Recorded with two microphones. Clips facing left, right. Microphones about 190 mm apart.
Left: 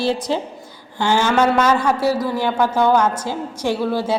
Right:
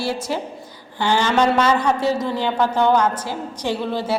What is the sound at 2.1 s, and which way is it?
Speech, 20° right (ahead or behind).